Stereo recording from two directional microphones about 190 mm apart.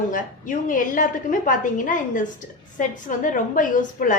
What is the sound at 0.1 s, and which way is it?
A woman's voice, 45° left (ahead or behind).